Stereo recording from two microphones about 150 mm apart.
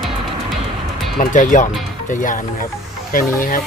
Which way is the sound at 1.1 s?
60° left (ahead or behind).